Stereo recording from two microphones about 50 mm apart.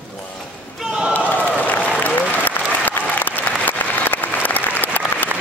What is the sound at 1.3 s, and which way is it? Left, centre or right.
Applause, left.